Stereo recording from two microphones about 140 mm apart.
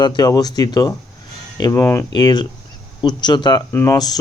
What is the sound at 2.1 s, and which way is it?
Speech, 30° left (ahead or behind).